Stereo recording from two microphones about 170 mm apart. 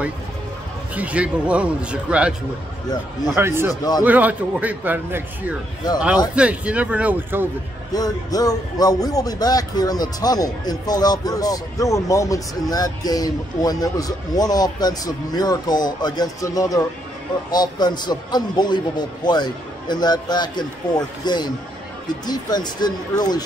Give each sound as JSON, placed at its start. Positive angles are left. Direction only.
{"t": 0.9, "sound": "a man's voice", "side_deg": -10}
{"t": 3.3, "sound": "a man's voice", "side_deg": -15}
{"t": 7.9, "sound": "speech", "side_deg": 20}